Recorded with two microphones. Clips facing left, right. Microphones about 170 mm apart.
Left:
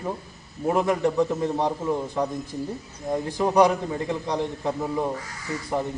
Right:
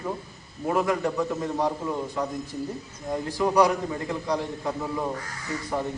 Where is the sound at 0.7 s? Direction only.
25° left (ahead or behind).